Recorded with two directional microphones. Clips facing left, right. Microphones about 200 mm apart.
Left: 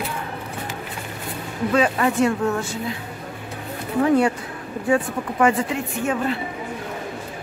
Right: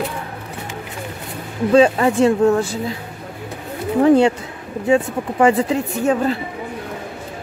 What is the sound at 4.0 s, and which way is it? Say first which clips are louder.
Speech: right 5 dB; 30° right (ahead or behind).